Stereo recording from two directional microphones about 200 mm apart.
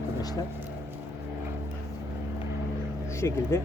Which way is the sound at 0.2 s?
20° left (ahead or behind).